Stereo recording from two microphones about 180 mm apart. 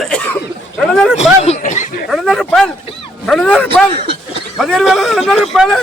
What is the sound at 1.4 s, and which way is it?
Speech, 40° left (ahead or behind).